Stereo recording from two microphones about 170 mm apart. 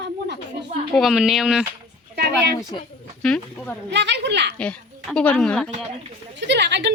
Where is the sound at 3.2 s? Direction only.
5° left (ahead or behind).